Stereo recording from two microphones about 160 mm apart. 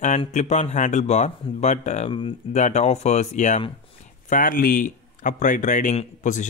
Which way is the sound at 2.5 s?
45° left (ahead or behind).